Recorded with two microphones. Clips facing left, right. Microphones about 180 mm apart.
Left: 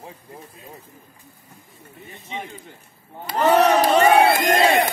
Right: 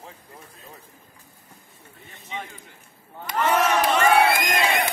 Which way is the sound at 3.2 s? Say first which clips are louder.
Left 5 dB; 35° left (ahead or behind).